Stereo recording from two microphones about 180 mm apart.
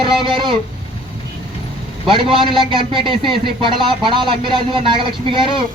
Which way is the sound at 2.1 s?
30° right (ahead or behind).